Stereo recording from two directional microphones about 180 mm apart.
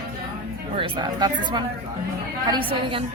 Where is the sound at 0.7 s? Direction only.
30° right (ahead or behind).